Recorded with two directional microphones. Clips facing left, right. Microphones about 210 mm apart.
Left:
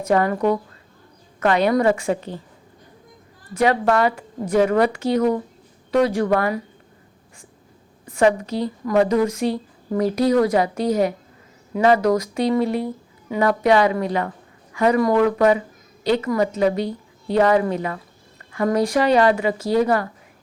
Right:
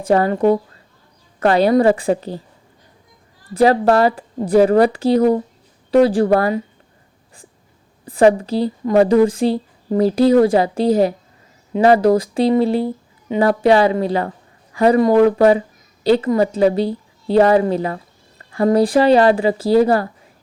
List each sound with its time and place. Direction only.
0.0 s a woman's voice: 30° right (ahead or behind)
3.5 s a woman's voice: 35° right (ahead or behind)
8.0 s a woman's voice: 35° right (ahead or behind)